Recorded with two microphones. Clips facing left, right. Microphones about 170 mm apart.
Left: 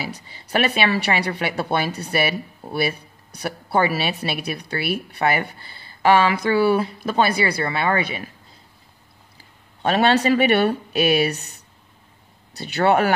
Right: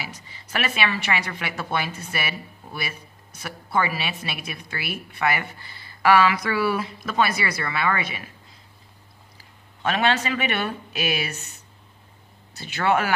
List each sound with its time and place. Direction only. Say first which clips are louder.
0.0 s a woman's voice: left 6 dB; 35° left (ahead or behind)
9.8 s a woman's voice: left 6 dB; 35° left (ahead or behind)
12.5 s a woman's voice: left 5 dB; 35° left (ahead or behind)